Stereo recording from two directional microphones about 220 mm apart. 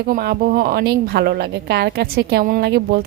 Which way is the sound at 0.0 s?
45° right (ahead or behind).